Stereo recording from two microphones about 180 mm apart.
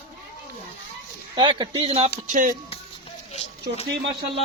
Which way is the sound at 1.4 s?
25° right (ahead or behind).